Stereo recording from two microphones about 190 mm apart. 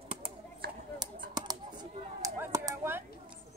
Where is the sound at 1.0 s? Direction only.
20° right (ahead or behind).